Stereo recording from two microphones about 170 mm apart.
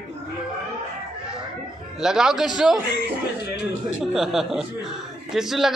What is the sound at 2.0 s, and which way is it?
Speech, 5° right (ahead or behind).